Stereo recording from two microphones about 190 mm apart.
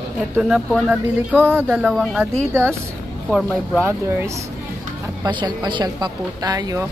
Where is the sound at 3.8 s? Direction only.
15° right (ahead or behind).